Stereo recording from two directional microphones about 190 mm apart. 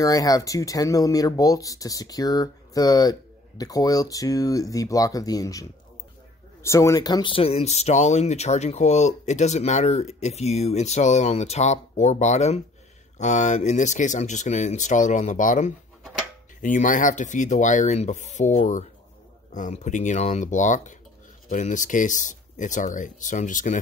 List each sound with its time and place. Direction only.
0.0 s speech: 20° left (ahead or behind); by 23.8 s 40° left (ahead or behind)